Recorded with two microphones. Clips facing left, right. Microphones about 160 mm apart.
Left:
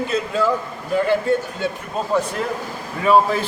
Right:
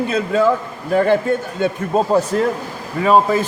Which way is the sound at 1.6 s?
40° right (ahead or behind).